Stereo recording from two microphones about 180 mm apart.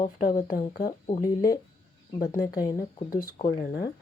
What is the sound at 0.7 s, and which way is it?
Speech, 55° left (ahead or behind).